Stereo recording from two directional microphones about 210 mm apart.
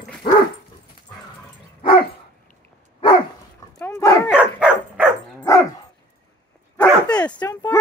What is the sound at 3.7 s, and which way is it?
Dog, 15° left (ahead or behind).